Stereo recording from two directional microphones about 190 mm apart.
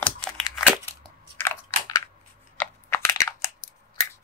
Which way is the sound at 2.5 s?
10° left (ahead or behind).